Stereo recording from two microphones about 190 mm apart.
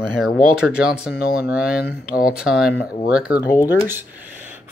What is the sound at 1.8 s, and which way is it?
Speech, 50° left (ahead or behind).